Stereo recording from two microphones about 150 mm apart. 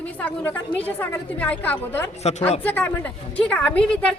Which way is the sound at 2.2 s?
45° left (ahead or behind).